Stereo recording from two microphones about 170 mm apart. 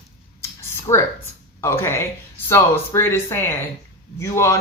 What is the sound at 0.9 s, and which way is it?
Speech, 20° left (ahead or behind).